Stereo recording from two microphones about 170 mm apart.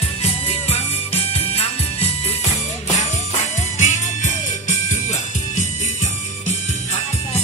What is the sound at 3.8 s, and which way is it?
Music, 45° left (ahead or behind).